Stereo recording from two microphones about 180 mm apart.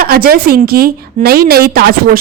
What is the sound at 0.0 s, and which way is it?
A woman's voice, 55° right (ahead or behind).